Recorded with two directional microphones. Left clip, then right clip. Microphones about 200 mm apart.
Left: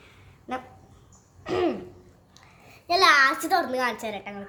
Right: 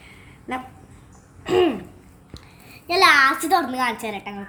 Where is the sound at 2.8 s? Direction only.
15° left (ahead or behind).